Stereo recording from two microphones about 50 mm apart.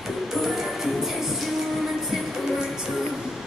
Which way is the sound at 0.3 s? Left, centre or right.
Centre.